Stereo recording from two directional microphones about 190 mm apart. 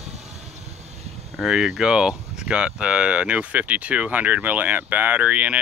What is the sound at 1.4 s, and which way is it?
Speech, 5° right (ahead or behind).